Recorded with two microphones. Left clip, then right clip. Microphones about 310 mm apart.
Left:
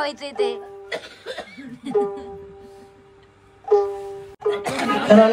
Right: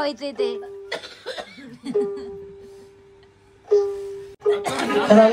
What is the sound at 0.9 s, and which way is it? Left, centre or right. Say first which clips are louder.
Speech: left 1 dB; right.